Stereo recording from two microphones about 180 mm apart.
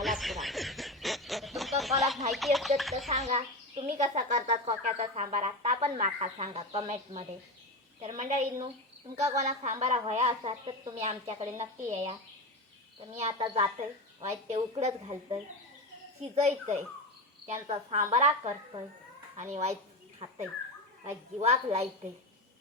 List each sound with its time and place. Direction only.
0.0 s snicker: centre (ahead or behind)
1.8 s a sound: centre (ahead or behind)
2.3 s music: centre (ahead or behind)
3.1 s speech: 40° right (ahead or behind)
13.1 s speech: 35° right (ahead or behind)
19.5 s speech: 35° right (ahead or behind)